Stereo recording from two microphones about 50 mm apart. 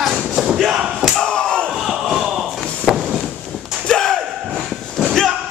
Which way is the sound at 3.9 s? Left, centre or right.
Centre.